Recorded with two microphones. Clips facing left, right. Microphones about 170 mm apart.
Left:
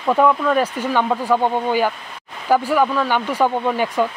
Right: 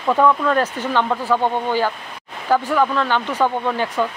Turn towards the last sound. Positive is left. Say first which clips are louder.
# left 2 dB
turn(degrees=10)  # may be behind; listen again after turning